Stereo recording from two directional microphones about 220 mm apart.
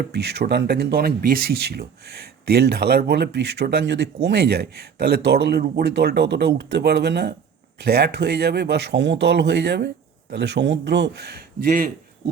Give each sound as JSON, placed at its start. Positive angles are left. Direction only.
{"t": 0.0, "sound": "speech", "side_deg": -50}